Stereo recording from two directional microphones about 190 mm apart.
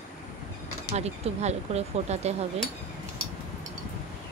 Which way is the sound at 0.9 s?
35° right (ahead or behind).